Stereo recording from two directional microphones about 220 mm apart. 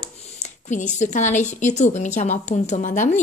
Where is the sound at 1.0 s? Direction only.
35° left (ahead or behind).